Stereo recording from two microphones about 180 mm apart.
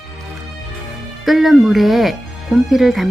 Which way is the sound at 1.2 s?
Centre (ahead or behind).